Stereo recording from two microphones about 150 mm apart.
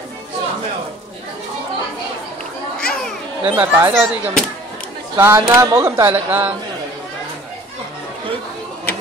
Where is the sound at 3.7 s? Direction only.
15° right (ahead or behind).